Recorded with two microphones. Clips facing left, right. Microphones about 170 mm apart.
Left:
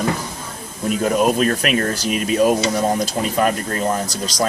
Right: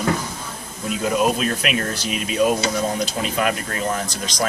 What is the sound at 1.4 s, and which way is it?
Speech, 45° left (ahead or behind).